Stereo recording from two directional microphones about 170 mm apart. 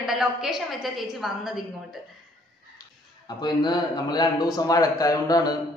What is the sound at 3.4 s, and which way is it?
A man's voice, 25° left (ahead or behind).